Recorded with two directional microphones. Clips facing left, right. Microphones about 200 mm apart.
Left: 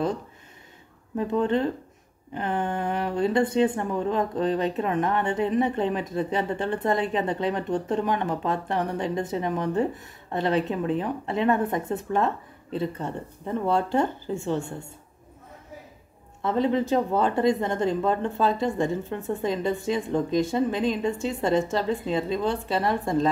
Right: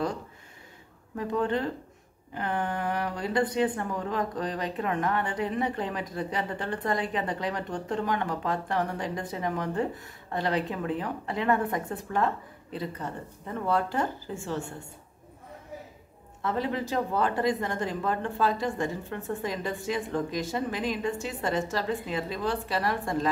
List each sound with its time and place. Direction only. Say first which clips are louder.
1.1 s speech: left 4 dB; 20° left (ahead or behind)
16.4 s speech: left 6 dB; 25° left (ahead or behind)